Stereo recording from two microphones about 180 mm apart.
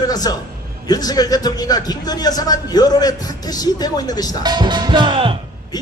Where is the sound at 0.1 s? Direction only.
20° left (ahead or behind).